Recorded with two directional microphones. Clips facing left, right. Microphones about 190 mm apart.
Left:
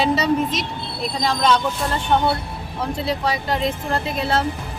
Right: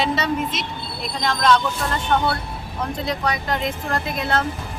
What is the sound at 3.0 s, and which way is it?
Speech, 30° left (ahead or behind).